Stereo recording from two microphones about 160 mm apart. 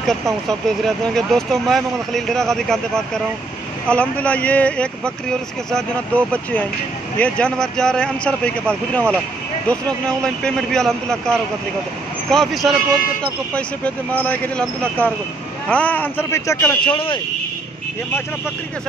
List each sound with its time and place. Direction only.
0.0 s speech: centre (ahead or behind)
3.9 s speech: 10° left (ahead or behind)
16.9 s speech: 30° left (ahead or behind)